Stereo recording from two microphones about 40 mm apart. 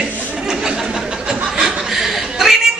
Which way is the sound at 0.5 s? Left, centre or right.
Centre.